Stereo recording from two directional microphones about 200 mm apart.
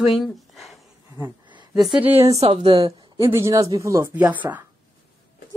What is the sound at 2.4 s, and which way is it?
A woman's voice, 30° right (ahead or behind).